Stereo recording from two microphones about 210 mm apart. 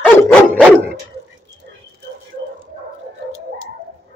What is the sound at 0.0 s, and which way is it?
Dog, centre (ahead or behind).